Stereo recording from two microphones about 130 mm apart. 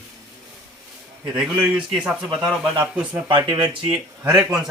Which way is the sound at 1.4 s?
5° right (ahead or behind).